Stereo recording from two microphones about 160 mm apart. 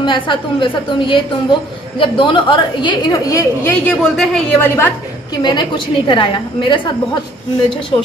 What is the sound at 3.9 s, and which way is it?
Speech, 5° left (ahead or behind).